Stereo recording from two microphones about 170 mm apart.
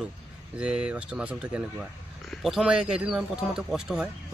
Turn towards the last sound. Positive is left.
turn(degrees=-5)  # may be behind; listen again after turning